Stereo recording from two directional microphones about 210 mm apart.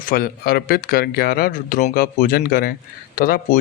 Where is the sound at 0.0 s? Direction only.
45° left (ahead or behind).